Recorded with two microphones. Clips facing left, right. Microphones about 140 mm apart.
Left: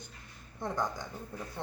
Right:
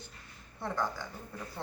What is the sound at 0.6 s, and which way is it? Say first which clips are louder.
Speech: even; 15° left (ahead or behind).